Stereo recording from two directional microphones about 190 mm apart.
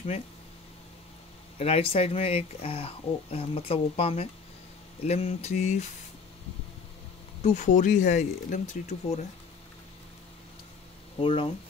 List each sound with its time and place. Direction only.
1.6 s speech: 30° left (ahead or behind)
7.4 s speech: 40° left (ahead or behind)
11.1 s speech: 30° left (ahead or behind)